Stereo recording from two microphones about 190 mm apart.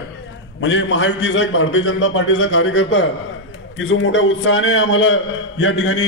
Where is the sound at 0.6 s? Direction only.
70° left (ahead or behind).